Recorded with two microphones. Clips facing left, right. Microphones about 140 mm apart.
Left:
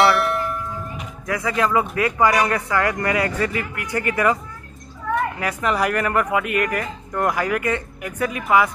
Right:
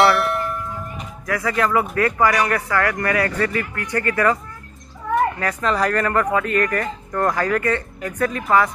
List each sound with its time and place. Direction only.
0.0 s a sound: centre (ahead or behind)
1.2 s speech: 20° left (ahead or behind)
5.4 s speech: 15° left (ahead or behind)